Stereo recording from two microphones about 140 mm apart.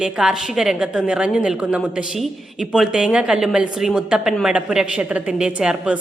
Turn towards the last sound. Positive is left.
turn(degrees=-5)  # may be behind; listen again after turning